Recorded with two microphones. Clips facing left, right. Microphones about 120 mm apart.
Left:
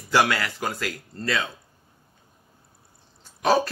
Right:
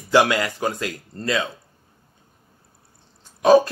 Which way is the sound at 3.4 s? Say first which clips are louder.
Right 7 dB; 15° right (ahead or behind).